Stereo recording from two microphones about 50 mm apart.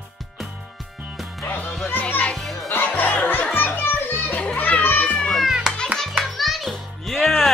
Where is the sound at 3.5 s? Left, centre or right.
Left.